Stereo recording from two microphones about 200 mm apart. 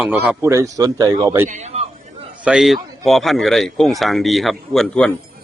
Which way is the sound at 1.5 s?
35° right (ahead or behind).